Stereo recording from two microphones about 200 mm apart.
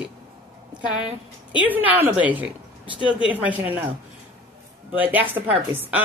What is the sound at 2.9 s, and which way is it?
Speech, 25° left (ahead or behind).